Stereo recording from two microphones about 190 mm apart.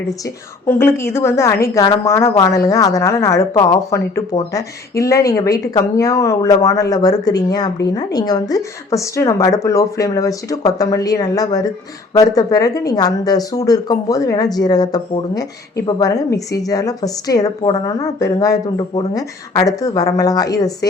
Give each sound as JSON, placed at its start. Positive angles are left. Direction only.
{"t": 0.7, "sound": "a woman's voice", "side_deg": 15}